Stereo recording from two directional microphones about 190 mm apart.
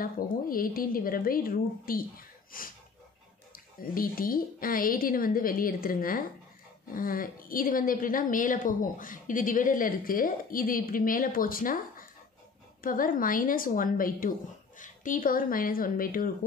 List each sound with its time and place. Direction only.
0.0 s a woman's voice: 50° left (ahead or behind)